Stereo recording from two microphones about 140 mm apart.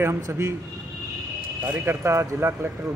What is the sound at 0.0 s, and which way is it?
Speech, 20° right (ahead or behind).